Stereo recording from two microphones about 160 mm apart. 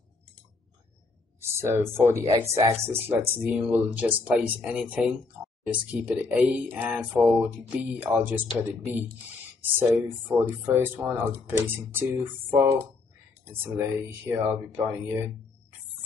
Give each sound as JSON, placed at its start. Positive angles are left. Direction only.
{"t": 1.6, "sound": "speech", "side_deg": -15}